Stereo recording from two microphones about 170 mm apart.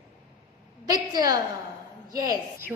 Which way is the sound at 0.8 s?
20° right (ahead or behind).